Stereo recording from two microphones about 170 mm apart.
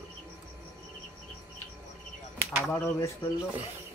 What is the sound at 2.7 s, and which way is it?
Speech, 15° left (ahead or behind).